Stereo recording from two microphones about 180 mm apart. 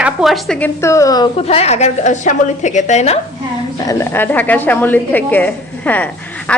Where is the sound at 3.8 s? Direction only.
10° left (ahead or behind).